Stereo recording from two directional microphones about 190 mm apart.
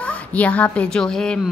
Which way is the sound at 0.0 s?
5° left (ahead or behind).